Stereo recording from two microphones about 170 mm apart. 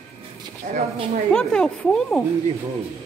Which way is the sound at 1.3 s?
5° left (ahead or behind).